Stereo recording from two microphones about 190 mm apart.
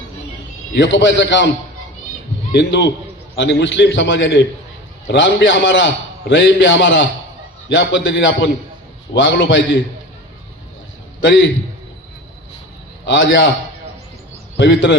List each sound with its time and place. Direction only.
0.7 s a man's voice: 70° left (ahead or behind)
2.5 s a man's voice: 65° left (ahead or behind)
11.2 s a man's voice: 75° left (ahead or behind)
13.1 s a man's voice: 75° left (ahead or behind)
14.5 s a man's voice: 75° left (ahead or behind)